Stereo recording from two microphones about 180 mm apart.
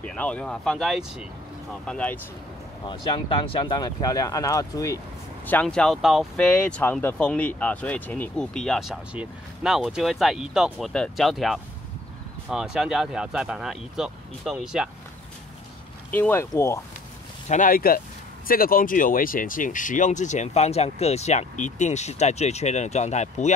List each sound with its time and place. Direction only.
0.0 s speech: 5° left (ahead or behind)
2.8 s speech: 25° left (ahead or behind)
5.5 s speech: 5° left (ahead or behind)
16.1 s speech: 10° left (ahead or behind)
17.5 s speech: 50° left (ahead or behind)